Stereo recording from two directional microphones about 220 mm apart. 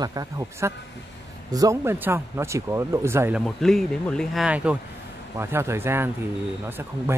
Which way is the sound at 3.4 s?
Centre (ahead or behind).